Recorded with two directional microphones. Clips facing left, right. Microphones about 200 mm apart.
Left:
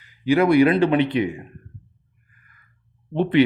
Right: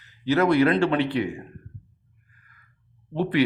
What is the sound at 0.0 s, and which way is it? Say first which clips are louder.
A man's voice: left 3 dB; 10° left (ahead or behind).